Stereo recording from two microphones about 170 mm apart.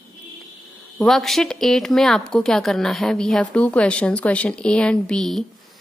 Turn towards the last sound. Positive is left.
turn(degrees=5)  # may be behind; listen again after turning